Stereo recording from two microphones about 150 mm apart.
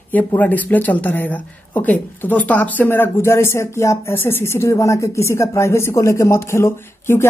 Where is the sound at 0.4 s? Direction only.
10° left (ahead or behind).